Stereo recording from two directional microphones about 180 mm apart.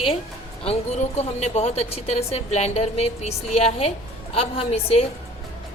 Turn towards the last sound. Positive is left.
turn(degrees=35)  # may be behind; listen again after turning